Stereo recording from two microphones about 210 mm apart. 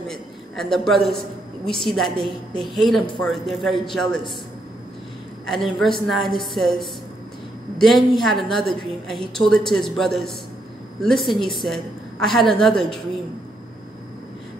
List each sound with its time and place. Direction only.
0.1 s a man's voice: centre (ahead or behind)
5.5 s a woman's voice: centre (ahead or behind)